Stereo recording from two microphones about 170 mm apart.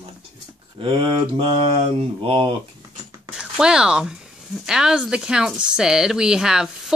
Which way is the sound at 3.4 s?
5° right (ahead or behind).